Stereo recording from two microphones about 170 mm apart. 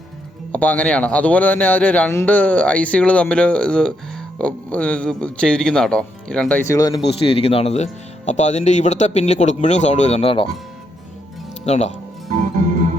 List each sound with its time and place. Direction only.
0.5 s a man's voice: 10° left (ahead or behind)
6.7 s speech: 20° left (ahead or behind)
7.1 s speech: 35° left (ahead or behind)
11.6 s speech: 40° left (ahead or behind)